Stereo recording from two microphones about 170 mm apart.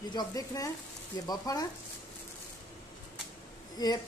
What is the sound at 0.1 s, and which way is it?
Speech, 20° left (ahead or behind).